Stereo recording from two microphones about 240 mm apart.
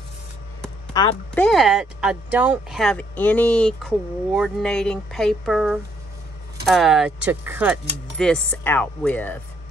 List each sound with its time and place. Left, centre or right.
1.0 s speech: centre
1.3 s speech: centre